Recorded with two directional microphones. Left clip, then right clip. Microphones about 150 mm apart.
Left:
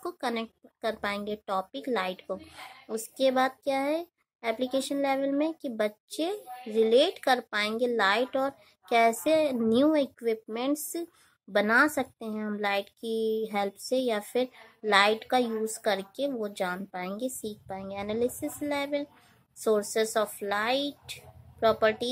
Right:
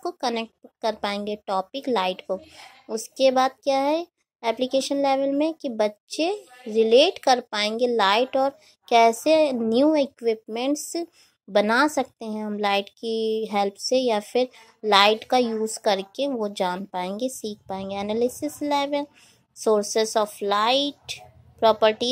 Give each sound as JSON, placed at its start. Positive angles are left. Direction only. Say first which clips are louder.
{"t": 0.0, "sound": "a woman's voice", "louder": "right 6 dB", "side_deg": -25}